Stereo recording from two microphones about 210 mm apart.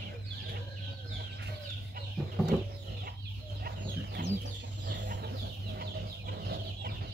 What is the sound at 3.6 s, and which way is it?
Chicken, 45° right (ahead or behind).